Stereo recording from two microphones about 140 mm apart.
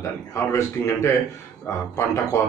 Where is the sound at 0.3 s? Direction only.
20° left (ahead or behind).